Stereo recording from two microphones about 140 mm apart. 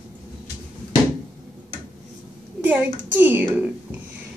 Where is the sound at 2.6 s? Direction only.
10° right (ahead or behind).